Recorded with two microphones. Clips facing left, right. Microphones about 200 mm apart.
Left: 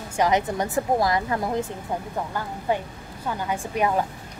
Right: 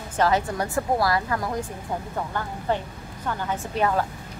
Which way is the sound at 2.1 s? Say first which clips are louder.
Even; 10° left (ahead or behind).